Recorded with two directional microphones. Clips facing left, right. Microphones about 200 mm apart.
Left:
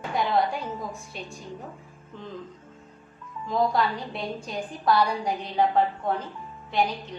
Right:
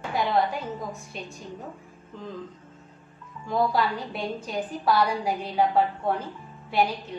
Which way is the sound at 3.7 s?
5° right (ahead or behind).